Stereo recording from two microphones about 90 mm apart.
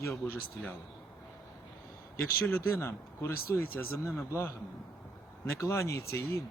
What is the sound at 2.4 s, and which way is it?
A man's voice, 20° left (ahead or behind).